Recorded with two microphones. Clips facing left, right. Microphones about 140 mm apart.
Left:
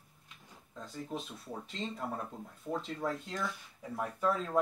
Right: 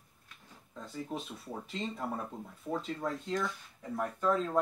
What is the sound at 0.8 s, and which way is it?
Speech, centre (ahead or behind).